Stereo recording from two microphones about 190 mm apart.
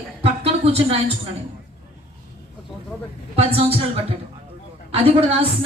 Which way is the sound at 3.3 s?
30° right (ahead or behind).